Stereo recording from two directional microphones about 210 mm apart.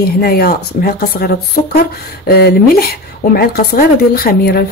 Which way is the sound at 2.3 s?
45° left (ahead or behind).